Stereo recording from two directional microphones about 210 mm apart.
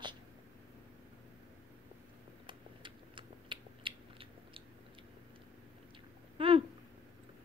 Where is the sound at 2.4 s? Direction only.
25° right (ahead or behind).